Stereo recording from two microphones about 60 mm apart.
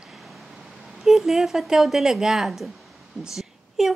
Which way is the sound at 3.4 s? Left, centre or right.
Centre.